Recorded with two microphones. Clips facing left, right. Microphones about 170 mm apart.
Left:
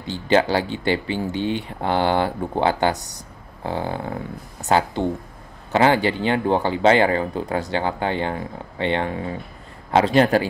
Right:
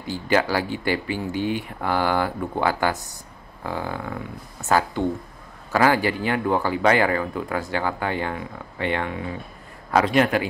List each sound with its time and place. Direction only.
0.0 s speech: 25° left (ahead or behind)